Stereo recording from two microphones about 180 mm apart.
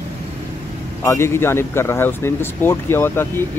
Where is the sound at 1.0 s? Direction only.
15° left (ahead or behind).